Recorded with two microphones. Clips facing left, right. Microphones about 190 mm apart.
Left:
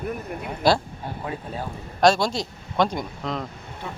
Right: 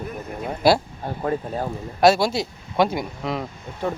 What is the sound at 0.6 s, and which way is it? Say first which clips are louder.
Speech: right 3 dB; 10° right (ahead or behind).